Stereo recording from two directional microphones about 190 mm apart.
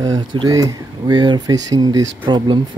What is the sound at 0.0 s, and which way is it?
Speech, 20° right (ahead or behind).